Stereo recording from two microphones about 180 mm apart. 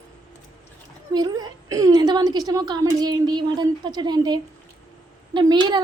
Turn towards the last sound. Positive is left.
turn(degrees=-25)  # may be behind; listen again after turning